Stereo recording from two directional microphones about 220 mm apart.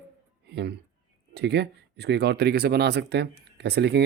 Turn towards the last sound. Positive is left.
turn(degrees=-50)  # may be behind; listen again after turning